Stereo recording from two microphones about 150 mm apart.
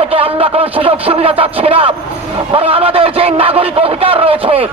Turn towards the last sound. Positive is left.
turn(degrees=-40)  # may be behind; listen again after turning